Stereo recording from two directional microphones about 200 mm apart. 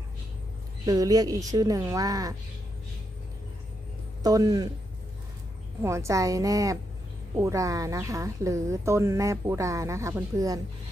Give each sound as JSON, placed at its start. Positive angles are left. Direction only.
{"t": 0.8, "sound": "speech", "side_deg": -20}
{"t": 4.2, "sound": "speech", "side_deg": -20}
{"t": 5.8, "sound": "speech", "side_deg": -15}